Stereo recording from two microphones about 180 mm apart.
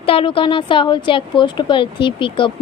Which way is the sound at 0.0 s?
30° left (ahead or behind).